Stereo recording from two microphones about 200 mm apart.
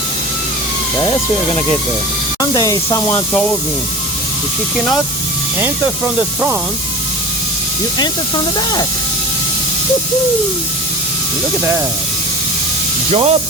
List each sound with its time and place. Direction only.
2.4 s speech: 20° left (ahead or behind)
8.5 s speech: 20° left (ahead or behind)
13.1 s speech: 30° right (ahead or behind)